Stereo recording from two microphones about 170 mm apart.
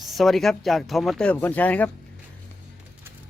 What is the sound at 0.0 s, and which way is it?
Speech, centre (ahead or behind).